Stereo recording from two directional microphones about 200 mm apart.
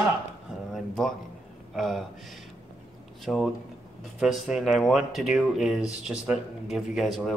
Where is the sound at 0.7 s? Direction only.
Centre (ahead or behind).